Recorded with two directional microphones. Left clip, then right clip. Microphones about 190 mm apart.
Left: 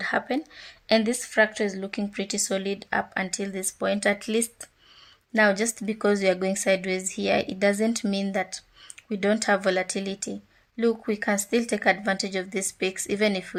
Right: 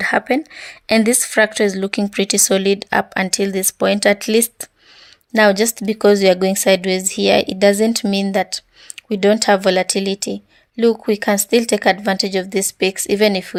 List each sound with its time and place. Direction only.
0.0 s a woman's voice: 35° right (ahead or behind)